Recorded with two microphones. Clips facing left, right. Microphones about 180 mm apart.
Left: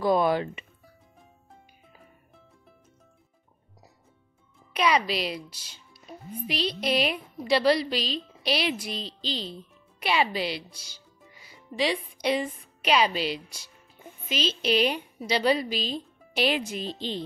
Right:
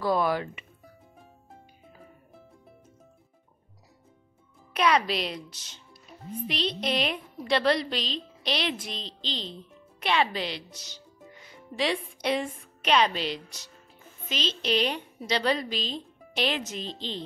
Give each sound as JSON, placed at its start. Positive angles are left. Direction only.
{"t": 0.0, "sound": "speech", "side_deg": 20}
{"t": 4.7, "sound": "a woman's voice", "side_deg": 0}